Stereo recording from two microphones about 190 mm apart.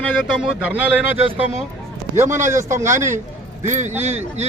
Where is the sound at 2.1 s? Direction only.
15° right (ahead or behind).